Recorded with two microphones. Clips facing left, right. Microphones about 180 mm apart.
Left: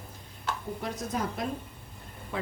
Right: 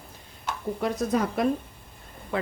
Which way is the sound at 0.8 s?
65° right (ahead or behind).